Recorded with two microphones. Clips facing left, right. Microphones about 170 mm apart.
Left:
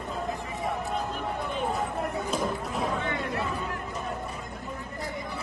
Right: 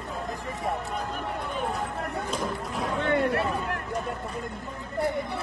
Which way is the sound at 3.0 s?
65° right (ahead or behind).